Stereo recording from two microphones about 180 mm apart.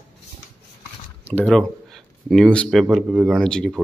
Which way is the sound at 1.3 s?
5° left (ahead or behind).